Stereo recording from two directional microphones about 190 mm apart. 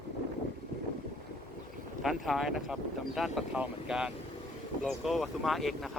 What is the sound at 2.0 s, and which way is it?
Speech, centre (ahead or behind).